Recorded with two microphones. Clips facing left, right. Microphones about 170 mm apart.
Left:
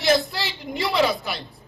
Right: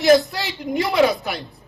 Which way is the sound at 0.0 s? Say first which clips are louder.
Right 6 dB; 45° right (ahead or behind).